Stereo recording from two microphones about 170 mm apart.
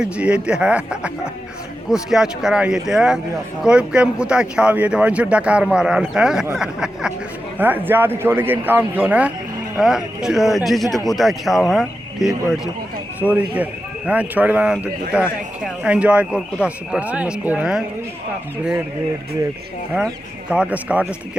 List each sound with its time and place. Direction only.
0.0 s speech: 5° right (ahead or behind)
20.5 s speech: 5° right (ahead or behind)